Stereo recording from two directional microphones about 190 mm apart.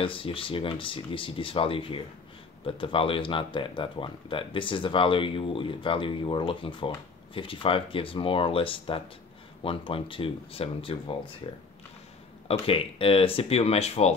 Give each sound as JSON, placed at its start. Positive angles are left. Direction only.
{"t": 0.0, "sound": "speech", "side_deg": 30}
{"t": 12.4, "sound": "speech", "side_deg": 30}